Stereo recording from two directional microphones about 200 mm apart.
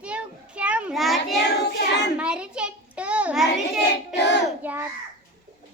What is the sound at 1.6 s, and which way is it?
Child singing, 60° left (ahead or behind).